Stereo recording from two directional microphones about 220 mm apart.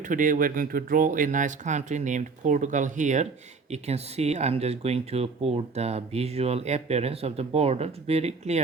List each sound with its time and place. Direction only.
0.0 s speech: 35° right (ahead or behind)